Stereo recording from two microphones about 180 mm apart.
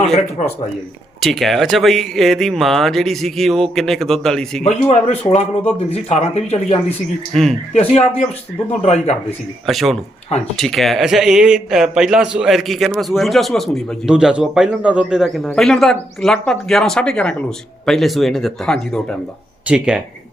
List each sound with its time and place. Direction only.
1.2 s a man's voice: centre (ahead or behind)
4.6 s speech: 40° left (ahead or behind)
9.6 s a man's voice: centre (ahead or behind)